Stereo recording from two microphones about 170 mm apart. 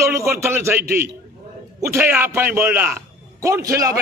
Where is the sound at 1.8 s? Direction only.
10° right (ahead or behind).